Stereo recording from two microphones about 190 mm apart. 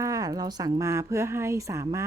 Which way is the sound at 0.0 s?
20° right (ahead or behind).